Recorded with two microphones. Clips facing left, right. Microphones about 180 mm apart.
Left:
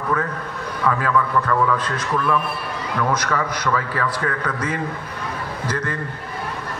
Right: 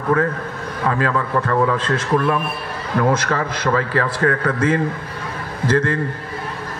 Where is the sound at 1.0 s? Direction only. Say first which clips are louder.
Even; 35° right (ahead or behind).